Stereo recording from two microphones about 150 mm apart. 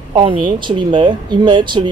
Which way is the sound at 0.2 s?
35° right (ahead or behind).